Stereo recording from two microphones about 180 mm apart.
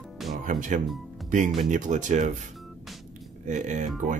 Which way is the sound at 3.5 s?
40° right (ahead or behind).